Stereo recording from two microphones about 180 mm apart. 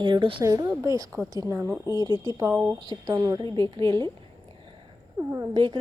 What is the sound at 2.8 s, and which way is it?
A woman's voice, 25° right (ahead or behind).